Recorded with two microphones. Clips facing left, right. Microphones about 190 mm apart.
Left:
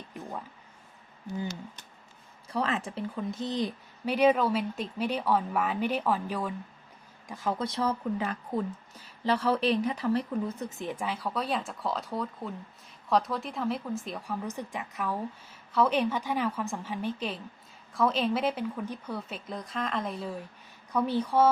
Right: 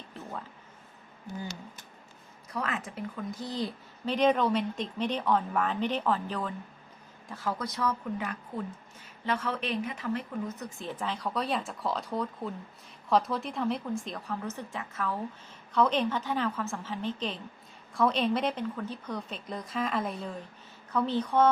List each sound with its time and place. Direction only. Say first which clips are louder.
0.1 s a sound: left 1 dB; 15° left (ahead or behind)
2.5 s a woman's voice: left 4 dB; 30° left (ahead or behind)
10.7 s speech: left 2 dB; 15° left (ahead or behind)